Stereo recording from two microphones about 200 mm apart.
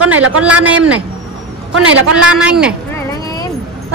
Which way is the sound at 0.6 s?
5° right (ahead or behind).